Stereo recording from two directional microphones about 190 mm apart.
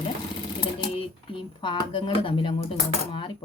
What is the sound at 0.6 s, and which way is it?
A woman's voice, 25° left (ahead or behind).